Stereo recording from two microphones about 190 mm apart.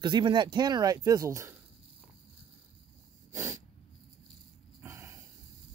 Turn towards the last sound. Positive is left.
turn(degrees=-15)  # may be behind; listen again after turning